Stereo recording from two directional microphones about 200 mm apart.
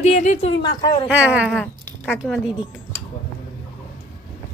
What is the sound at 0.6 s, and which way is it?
Speech, 20° left (ahead or behind).